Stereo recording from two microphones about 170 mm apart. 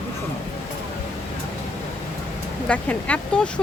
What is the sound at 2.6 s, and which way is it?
Speech, 10° left (ahead or behind).